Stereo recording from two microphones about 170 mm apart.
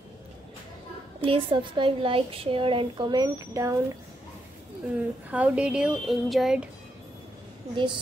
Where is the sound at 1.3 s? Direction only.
30° right (ahead or behind).